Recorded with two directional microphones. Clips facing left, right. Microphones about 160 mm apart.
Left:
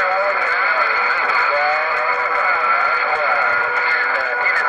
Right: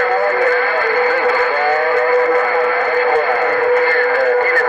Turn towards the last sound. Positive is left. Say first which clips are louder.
# right 10 dB
turn(degrees=-50)  # may be behind; listen again after turning